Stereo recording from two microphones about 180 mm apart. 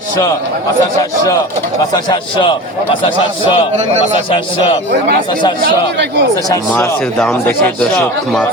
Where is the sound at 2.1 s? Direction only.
25° left (ahead or behind).